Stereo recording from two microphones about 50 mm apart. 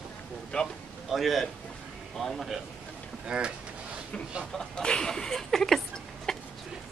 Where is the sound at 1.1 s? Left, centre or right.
Centre.